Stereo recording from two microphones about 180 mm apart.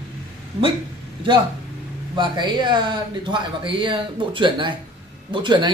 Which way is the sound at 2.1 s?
25° right (ahead or behind).